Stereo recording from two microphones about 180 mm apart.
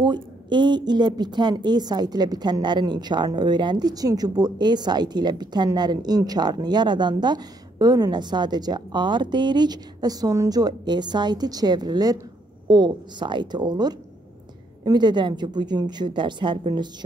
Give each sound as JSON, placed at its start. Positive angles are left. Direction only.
{"t": 0.0, "sound": "speech", "side_deg": -25}